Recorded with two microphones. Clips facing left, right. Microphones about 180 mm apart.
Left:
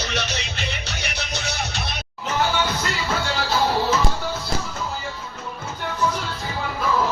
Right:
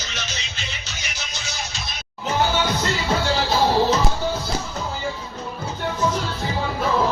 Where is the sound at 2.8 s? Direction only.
30° right (ahead or behind).